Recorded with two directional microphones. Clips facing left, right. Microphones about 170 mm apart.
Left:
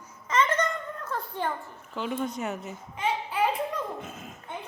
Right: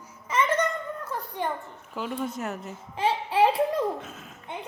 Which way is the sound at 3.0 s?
30° right (ahead or behind).